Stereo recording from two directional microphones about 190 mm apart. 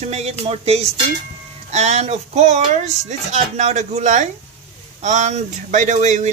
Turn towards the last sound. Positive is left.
turn(degrees=-40)  # may be behind; listen again after turning